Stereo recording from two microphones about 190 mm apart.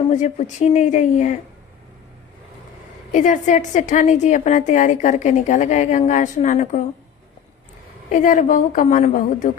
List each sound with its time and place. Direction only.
0.1 s a woman's voice: 40° left (ahead or behind)
3.1 s a woman's voice: 40° left (ahead or behind)
8.1 s a woman's voice: 45° left (ahead or behind)